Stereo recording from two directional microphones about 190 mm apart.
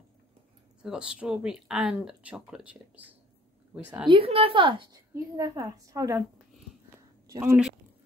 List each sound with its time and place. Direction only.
0.8 s speech: 5° right (ahead or behind)
4.1 s a woman's voice: 30° right (ahead or behind)
7.2 s speech: 15° right (ahead or behind)